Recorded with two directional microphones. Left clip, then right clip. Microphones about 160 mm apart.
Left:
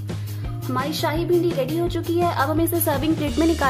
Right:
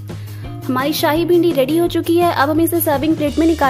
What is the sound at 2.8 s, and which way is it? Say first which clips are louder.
Speech: right 6 dB; 30° right (ahead or behind).